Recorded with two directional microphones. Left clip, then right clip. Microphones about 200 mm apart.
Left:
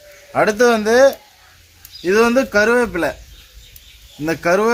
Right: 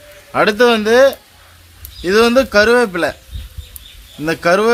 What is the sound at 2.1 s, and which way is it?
Speech, 50° right (ahead or behind).